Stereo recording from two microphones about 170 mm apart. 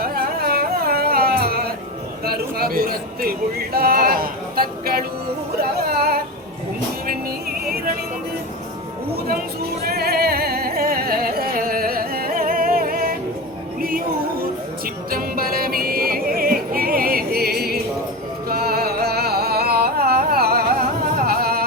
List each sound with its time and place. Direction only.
0.0 s carnatic music: 60° right (ahead or behind)
2.2 s speech: 65° right (ahead or behind)
5.5 s music: 65° right (ahead or behind)
9.8 s music: 65° right (ahead or behind)
15.1 s music: 60° right (ahead or behind)